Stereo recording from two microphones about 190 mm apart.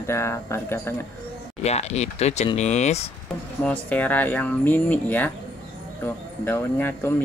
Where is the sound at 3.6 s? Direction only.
10° left (ahead or behind).